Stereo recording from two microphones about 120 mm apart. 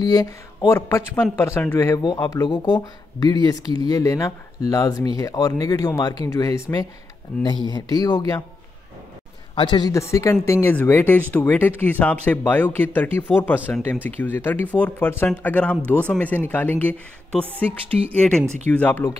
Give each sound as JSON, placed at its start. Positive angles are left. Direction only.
{"t": 0.0, "sound": "a man's voice", "side_deg": 35}
{"t": 2.0, "sound": "speech", "side_deg": 30}
{"t": 9.6, "sound": "speech", "side_deg": 40}
{"t": 9.9, "sound": "speech", "side_deg": 25}